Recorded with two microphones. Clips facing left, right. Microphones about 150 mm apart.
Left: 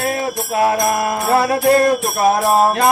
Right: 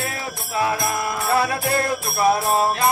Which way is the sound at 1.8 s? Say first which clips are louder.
Left 5 dB; 65° left (ahead or behind).